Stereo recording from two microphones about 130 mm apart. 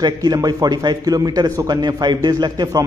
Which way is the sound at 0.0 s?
30° right (ahead or behind).